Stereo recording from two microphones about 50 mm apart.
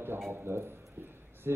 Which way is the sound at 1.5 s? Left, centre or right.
Right.